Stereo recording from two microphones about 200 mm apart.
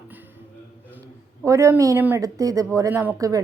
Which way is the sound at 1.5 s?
15° right (ahead or behind).